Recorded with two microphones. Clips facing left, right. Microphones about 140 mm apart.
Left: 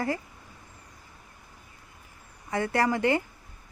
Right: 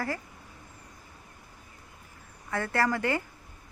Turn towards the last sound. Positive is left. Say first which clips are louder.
# left 3 dB
turn(degrees=20)  # may be behind; listen again after turning